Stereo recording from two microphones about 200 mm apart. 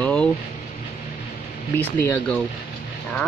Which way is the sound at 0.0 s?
5° left (ahead or behind).